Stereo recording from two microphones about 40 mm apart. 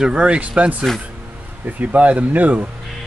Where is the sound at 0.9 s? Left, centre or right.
Centre.